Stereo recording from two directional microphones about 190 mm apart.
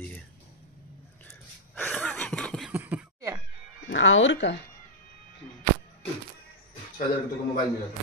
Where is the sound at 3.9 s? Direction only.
85° left.